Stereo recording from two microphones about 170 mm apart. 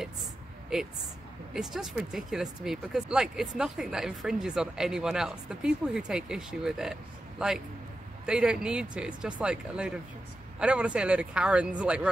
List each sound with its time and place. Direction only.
0.7 s speech: centre (ahead or behind)